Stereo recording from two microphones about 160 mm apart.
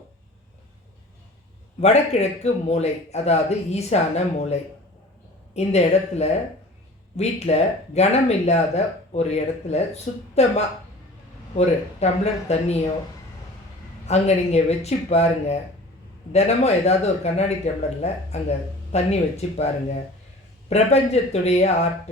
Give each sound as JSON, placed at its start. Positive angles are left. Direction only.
{"t": 1.8, "sound": "speech", "side_deg": 40}
{"t": 5.5, "sound": "speech", "side_deg": 45}
{"t": 11.5, "sound": "speech", "side_deg": 40}
{"t": 14.1, "sound": "speech", "side_deg": 45}